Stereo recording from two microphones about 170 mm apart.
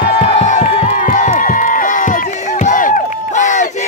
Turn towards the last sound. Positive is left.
turn(degrees=45)  # may be behind; listen again after turning